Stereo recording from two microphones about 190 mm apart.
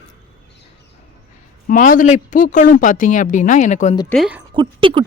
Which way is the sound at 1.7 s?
45° left (ahead or behind).